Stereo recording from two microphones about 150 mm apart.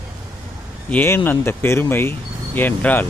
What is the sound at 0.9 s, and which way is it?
Speech, 15° left (ahead or behind).